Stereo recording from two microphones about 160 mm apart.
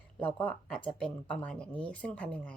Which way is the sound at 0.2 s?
10° left (ahead or behind).